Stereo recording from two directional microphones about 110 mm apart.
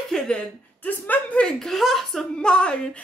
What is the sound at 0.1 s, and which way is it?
Speech, 10° left (ahead or behind).